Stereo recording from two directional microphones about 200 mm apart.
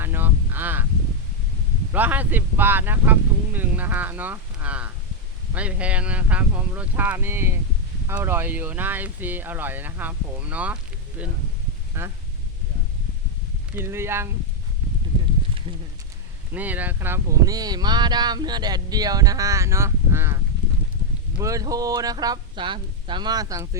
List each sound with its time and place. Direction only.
0.0 s a sound: 10° right (ahead or behind)
1.9 s speech: 10° right (ahead or behind)
13.7 s speech: 10° right (ahead or behind)
16.6 s speech: 10° right (ahead or behind)